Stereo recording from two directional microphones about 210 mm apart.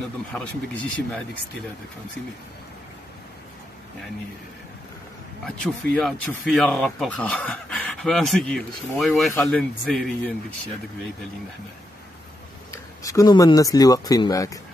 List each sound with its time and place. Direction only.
0.3 s speech: 5° left (ahead or behind)
5.6 s speech: 5° left (ahead or behind)
12.7 s speech: 15° left (ahead or behind)